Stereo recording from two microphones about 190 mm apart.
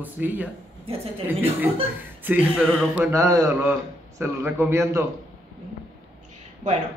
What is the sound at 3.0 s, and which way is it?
Speech, 15° right (ahead or behind).